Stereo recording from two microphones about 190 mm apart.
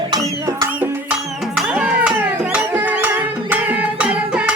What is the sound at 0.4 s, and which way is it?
Music, 15° right (ahead or behind).